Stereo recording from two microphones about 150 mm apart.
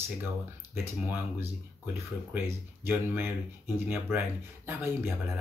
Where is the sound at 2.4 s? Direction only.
15° right (ahead or behind).